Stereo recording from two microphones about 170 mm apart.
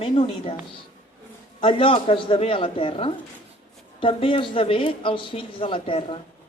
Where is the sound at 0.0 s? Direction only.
35° left (ahead or behind).